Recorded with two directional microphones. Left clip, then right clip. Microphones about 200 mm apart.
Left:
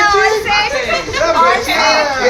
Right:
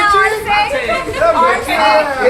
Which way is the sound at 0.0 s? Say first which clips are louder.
Even; 35° left (ahead or behind).